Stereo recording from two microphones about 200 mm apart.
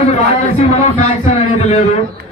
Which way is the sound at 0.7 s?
40° left (ahead or behind).